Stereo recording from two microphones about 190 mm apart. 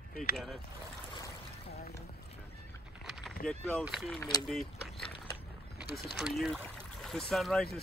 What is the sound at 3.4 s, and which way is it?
Speech, 5° left (ahead or behind).